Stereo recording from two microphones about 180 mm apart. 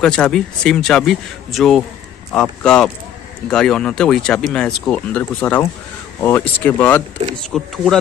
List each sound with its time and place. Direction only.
0.0 s speech: 5° left (ahead or behind)